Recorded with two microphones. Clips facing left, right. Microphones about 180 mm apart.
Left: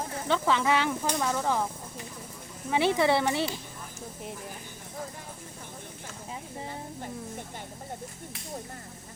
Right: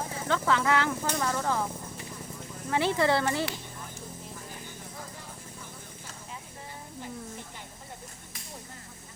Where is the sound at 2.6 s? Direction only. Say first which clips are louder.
Left 2 dB; 15° left (ahead or behind).